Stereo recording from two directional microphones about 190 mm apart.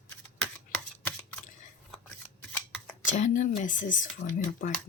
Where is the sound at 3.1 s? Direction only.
40° left (ahead or behind).